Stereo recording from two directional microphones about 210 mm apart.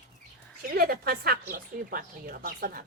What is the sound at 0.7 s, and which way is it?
A woman's voice, 45° right (ahead or behind).